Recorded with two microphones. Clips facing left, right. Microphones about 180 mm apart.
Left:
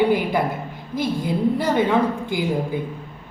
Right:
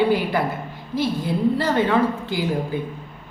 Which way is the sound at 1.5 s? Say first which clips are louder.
Left 2 dB; 15° left (ahead or behind).